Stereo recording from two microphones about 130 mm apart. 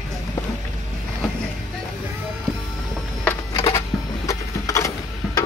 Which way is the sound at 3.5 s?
30° left (ahead or behind).